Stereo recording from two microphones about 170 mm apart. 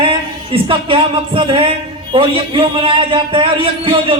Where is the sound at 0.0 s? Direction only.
30° right (ahead or behind).